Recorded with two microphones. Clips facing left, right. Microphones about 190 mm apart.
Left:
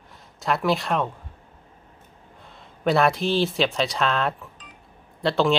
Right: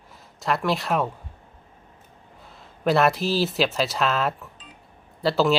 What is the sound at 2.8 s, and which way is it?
Speech, centre (ahead or behind).